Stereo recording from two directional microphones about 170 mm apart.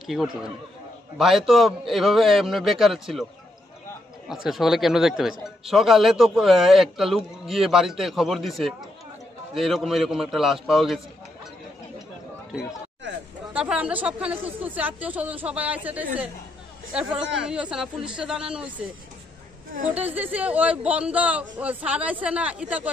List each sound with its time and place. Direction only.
0.0 s a man's voice: centre (ahead or behind)
4.3 s a man's voice: centre (ahead or behind)
13.0 s a sound: 90° right
13.5 s a man's voice: 5° right (ahead or behind)
20.2 s speech: 10° right (ahead or behind)